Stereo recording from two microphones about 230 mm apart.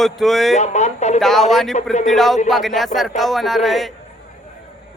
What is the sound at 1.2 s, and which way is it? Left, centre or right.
Speech, centre.